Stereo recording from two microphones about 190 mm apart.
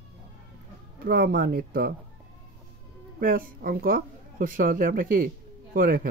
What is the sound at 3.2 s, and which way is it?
Speech, 50° right (ahead or behind).